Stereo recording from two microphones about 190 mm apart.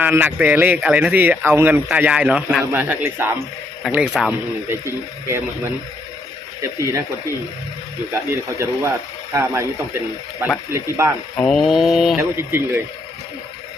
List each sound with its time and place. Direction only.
0.0 s speech: 10° right (ahead or behind)
3.9 s mantra: 5° right (ahead or behind)
6.6 s speech: 15° right (ahead or behind)
8.1 s speech: 15° right (ahead or behind)
11.3 s mantra: 5° left (ahead or behind)
12.1 s speech: 15° right (ahead or behind)